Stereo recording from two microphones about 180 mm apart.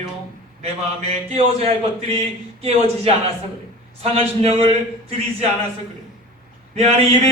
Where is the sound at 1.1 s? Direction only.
35° right (ahead or behind).